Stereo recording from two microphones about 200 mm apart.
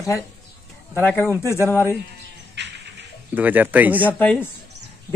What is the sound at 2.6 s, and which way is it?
Music, 60° right (ahead or behind).